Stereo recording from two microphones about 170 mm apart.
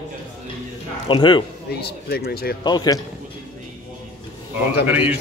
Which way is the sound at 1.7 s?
65° left (ahead or behind).